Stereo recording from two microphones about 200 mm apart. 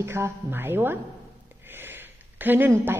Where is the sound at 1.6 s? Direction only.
10° right (ahead or behind).